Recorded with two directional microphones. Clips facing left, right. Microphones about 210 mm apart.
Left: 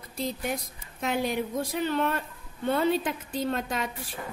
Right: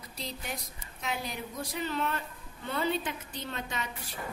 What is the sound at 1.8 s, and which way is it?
A woman's voice, 55° left (ahead or behind).